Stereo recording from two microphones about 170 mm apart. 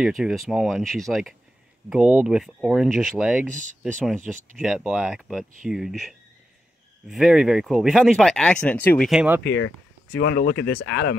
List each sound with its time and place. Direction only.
0.0 s speech: centre (ahead or behind)
9.4 s speech: 90° left